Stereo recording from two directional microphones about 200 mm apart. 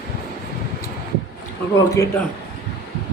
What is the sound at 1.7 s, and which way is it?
Speech, 15° left (ahead or behind).